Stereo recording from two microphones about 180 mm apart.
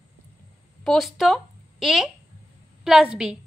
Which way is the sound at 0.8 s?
Centre (ahead or behind).